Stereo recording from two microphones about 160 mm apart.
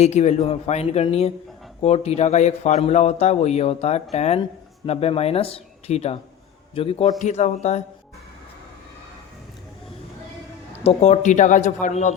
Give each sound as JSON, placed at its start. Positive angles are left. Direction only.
{"t": 0.0, "sound": "a man's voice", "side_deg": 45}
{"t": 10.8, "sound": "speech", "side_deg": 45}